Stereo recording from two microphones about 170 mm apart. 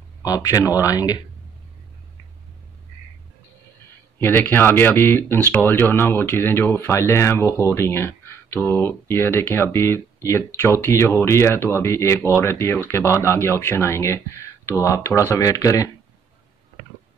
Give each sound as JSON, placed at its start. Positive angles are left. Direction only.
{"t": 0.2, "sound": "speech", "side_deg": 20}
{"t": 4.2, "sound": "speech", "side_deg": 10}